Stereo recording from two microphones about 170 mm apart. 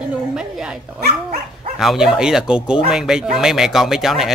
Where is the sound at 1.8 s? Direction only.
Centre (ahead or behind).